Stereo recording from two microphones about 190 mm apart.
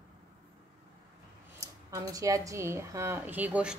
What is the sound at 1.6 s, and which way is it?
Speech, 15° right (ahead or behind).